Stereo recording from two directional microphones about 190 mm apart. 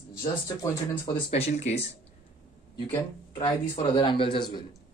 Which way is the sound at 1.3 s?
35° left (ahead or behind).